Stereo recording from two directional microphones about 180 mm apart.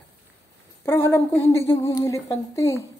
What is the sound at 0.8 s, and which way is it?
A woman's voice, 15° left (ahead or behind).